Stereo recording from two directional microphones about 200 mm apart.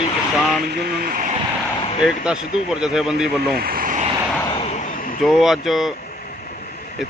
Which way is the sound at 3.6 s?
45° right (ahead or behind).